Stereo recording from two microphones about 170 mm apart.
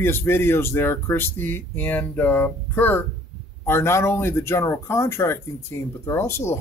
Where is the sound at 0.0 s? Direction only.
15° left (ahead or behind).